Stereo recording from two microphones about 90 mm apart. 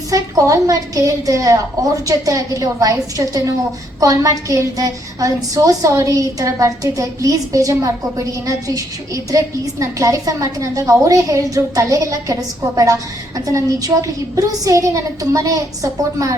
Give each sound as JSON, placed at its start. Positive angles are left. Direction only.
{"t": 0.1, "sound": "a woman's voice", "side_deg": -35}